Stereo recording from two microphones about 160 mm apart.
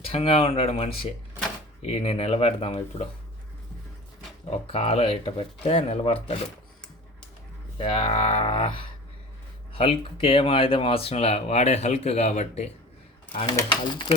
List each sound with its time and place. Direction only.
0.0 s speech: 40° left (ahead or behind)
4.4 s speech: 40° left (ahead or behind)
7.8 s speech: 40° left (ahead or behind)
13.3 s speech: 30° left (ahead or behind)